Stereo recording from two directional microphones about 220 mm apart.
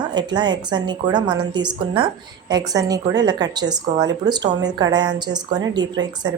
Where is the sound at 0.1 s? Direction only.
20° right (ahead or behind).